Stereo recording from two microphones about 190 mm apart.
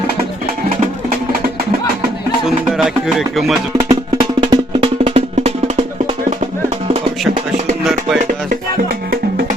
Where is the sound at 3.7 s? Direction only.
25° right (ahead or behind).